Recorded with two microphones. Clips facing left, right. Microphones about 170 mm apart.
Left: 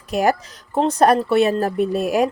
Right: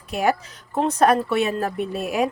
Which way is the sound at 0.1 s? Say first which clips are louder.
Left 3 dB; 40° left (ahead or behind).